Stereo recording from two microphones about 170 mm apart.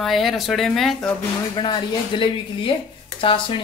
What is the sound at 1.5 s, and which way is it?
Speech, 25° left (ahead or behind).